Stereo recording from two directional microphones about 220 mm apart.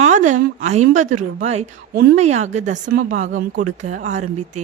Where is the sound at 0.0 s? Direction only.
35° right (ahead or behind).